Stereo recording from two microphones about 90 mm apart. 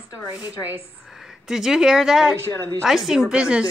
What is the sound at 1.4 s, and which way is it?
A woman's voice, 5° right (ahead or behind).